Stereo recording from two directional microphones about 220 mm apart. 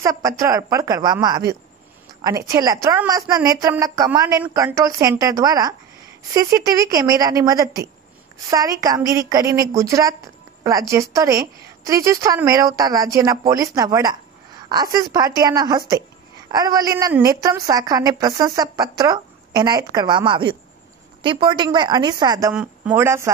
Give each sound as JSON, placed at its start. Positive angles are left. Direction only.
{"t": 0.0, "sound": "a woman's voice", "side_deg": -15}
{"t": 22.5, "sound": "a woman's voice", "side_deg": -5}